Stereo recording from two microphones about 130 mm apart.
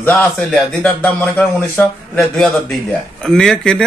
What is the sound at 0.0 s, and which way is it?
Speech, 15° left (ahead or behind).